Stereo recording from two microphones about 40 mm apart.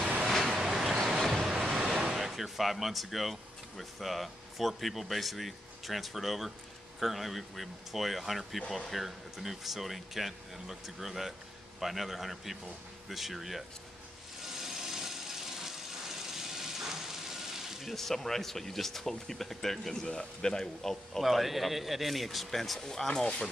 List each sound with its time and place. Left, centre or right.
0.3 s vehicle: centre
0.6 s vehicle: centre
0.9 s a sound: centre
1.9 s a sound: centre
2.1 s speech: centre
14.4 s tools: centre
17.9 s speech: centre
21.2 s speech: centre
23.0 s speech: left